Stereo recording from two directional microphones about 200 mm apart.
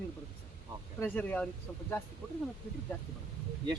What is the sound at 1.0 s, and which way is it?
Speech, 10° left (ahead or behind).